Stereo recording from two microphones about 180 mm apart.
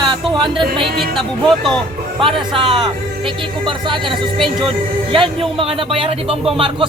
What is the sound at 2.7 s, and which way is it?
Speech, 25° right (ahead or behind).